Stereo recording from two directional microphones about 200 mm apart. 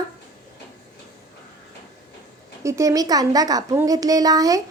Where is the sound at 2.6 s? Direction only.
15° right (ahead or behind).